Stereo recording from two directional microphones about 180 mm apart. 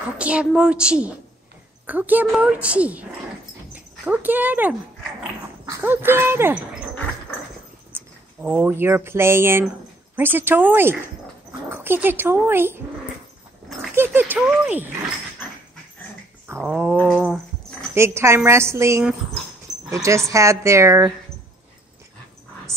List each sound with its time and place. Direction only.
0.2 s a woman's voice: 5° right (ahead or behind)
7.9 s a woman's voice: 10° right (ahead or behind)
13.9 s a woman's voice: 10° right (ahead or behind)
16.4 s a woman's voice: 10° right (ahead or behind)
22.7 s a sound: 15° right (ahead or behind)